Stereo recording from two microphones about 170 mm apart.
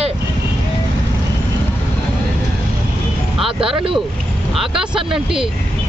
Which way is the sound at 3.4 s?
30° right (ahead or behind).